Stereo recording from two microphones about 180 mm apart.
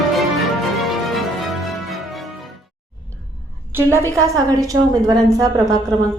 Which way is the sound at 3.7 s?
15° right (ahead or behind).